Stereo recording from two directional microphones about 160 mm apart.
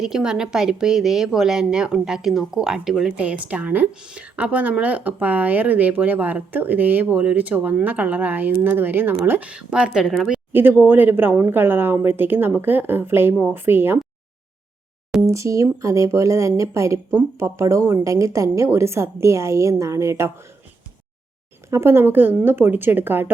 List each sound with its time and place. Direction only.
0.0 s a woman's voice: 5° right (ahead or behind)
15.3 s a woman's voice: 20° right (ahead or behind)
21.7 s a woman's voice: 15° right (ahead or behind)